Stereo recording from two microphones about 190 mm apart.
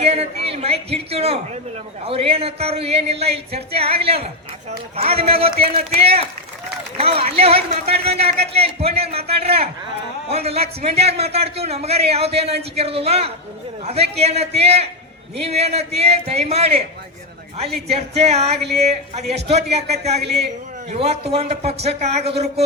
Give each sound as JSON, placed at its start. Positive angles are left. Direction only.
{"t": 0.0, "sound": "a man's voice", "side_deg": -30}
{"t": 17.9, "sound": "a man's voice", "side_deg": -35}
{"t": 20.1, "sound": "a man's voice", "side_deg": -60}
{"t": 20.9, "sound": "a man's voice", "side_deg": -35}